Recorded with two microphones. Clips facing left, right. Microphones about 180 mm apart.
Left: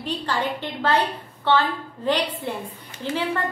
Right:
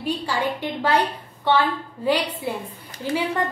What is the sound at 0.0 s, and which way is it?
A woman's voice, 10° right (ahead or behind).